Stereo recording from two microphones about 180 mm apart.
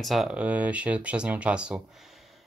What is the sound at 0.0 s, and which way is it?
Speech, centre (ahead or behind).